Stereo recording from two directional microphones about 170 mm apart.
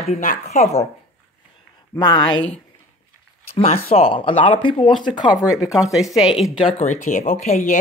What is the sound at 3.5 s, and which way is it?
Speech, 35° left (ahead or behind).